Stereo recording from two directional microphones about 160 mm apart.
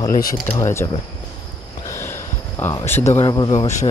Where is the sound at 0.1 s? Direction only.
60° left (ahead or behind).